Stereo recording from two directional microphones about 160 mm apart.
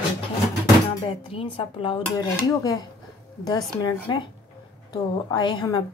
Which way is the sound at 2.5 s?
25° left (ahead or behind).